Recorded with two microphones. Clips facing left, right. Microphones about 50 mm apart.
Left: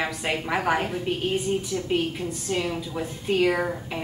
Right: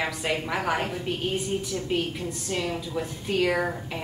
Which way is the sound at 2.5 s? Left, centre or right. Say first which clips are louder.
Left 1 dB; centre.